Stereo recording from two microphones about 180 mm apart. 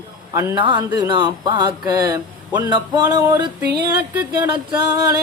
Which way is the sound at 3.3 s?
25° right (ahead or behind).